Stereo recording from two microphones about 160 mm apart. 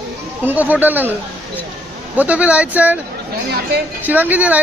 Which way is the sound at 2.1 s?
10° right (ahead or behind).